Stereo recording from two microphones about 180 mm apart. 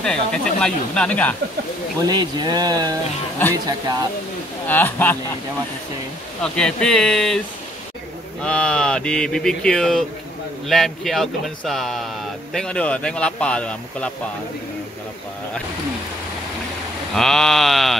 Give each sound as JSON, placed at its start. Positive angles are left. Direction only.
{"t": 0.0, "sound": "speech", "side_deg": 5}
{"t": 2.0, "sound": "speech", "side_deg": -25}
{"t": 4.6, "sound": "speech", "side_deg": 10}
{"t": 6.4, "sound": "speech", "side_deg": 5}
{"t": 17.1, "sound": "speech", "side_deg": 0}